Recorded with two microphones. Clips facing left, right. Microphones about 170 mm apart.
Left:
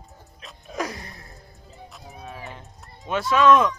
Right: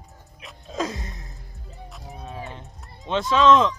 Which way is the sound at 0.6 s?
20° right (ahead or behind).